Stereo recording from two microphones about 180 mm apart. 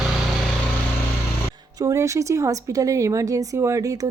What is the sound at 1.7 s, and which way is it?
A woman's voice, 15° right (ahead or behind).